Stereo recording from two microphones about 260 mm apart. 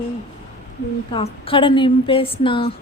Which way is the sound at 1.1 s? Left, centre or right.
Left.